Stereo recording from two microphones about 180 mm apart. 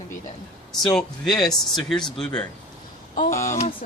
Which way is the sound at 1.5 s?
Centre (ahead or behind).